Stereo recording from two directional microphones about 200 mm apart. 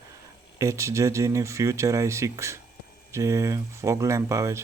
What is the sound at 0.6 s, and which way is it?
Speech, 15° right (ahead or behind).